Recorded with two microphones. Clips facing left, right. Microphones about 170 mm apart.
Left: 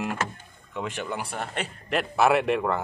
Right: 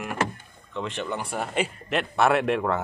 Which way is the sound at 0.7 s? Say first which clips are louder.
Right 1 dB; 5° left (ahead or behind).